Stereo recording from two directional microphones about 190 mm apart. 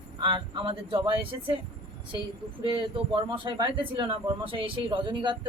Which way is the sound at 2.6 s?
25° right (ahead or behind).